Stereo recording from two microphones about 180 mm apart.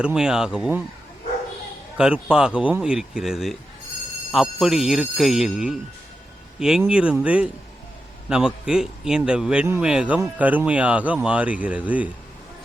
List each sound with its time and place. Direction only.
0.0 s speech: 5° right (ahead or behind)
2.0 s speech: 5° right (ahead or behind)